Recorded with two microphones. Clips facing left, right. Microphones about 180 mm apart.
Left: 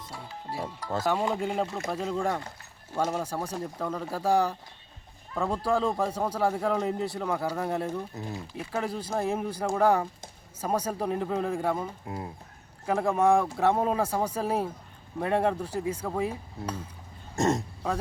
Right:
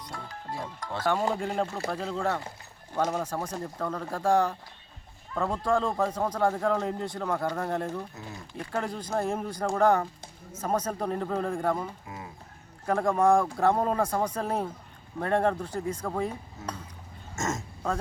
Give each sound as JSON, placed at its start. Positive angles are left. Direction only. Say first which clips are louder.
{"t": 0.0, "sound": "music", "louder": "right 1 dB", "side_deg": 5}
{"t": 0.5, "sound": "speech", "louder": "left 3 dB", "side_deg": 10}
{"t": 17.3, "sound": "speech", "louder": "left 6 dB", "side_deg": 35}